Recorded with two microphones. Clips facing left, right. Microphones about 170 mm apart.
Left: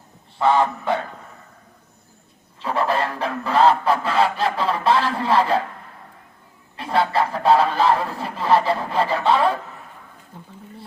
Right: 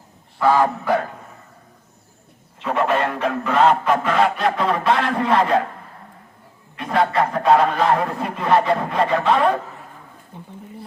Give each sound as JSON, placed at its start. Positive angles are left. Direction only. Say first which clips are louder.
{"t": 0.3, "sound": "speech", "louder": "right 1 dB", "side_deg": 25}
{"t": 2.6, "sound": "speech", "louder": "right 2 dB", "side_deg": 35}
{"t": 6.7, "sound": "speech", "louder": "right 1 dB", "side_deg": 30}
{"t": 10.3, "sound": "speech", "louder": "right 3 dB", "side_deg": -20}